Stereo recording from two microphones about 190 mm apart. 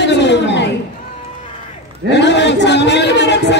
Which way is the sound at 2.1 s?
65° left (ahead or behind).